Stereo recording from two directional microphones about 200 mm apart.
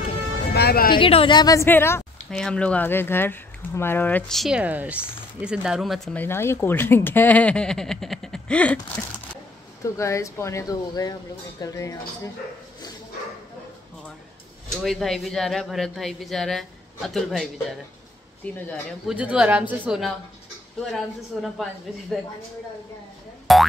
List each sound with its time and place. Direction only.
0.6 s speech: 50° left (ahead or behind)
0.9 s a woman's voice: 25° left (ahead or behind)
14.8 s speech: centre (ahead or behind)
19.1 s a woman's voice: 5° right (ahead or behind)
23.5 s boing: centre (ahead or behind)